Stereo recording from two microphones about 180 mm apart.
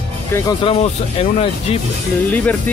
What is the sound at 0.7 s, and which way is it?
Speech, 30° left (ahead or behind).